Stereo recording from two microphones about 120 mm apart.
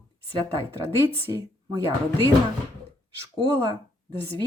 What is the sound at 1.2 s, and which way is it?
Speech, 25° right (ahead or behind).